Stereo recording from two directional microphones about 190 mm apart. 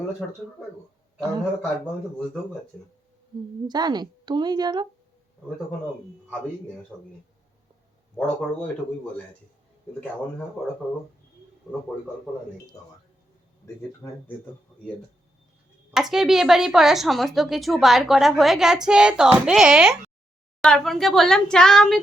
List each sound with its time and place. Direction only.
0.2 s a woman's voice: 5° left (ahead or behind)
2.7 s a woman's voice: 5° left (ahead or behind)
3.7 s a woman's voice: 20° right (ahead or behind)
6.9 s speech: 10° right (ahead or behind)
8.1 s speech: 5° left (ahead or behind)
11.6 s speech: centre (ahead or behind)
14.0 s speech: 15° left (ahead or behind)
16.0 s a woman's voice: centre (ahead or behind)